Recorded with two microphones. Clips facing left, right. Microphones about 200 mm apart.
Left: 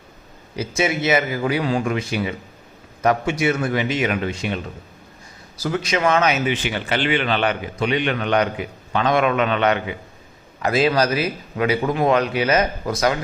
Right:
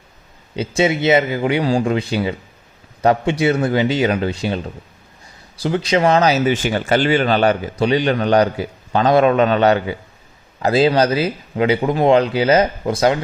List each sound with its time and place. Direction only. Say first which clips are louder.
0.5 s a man's voice: right 4 dB; 30° right (ahead or behind)
5.6 s a man's voice: right 4 dB; 30° right (ahead or behind)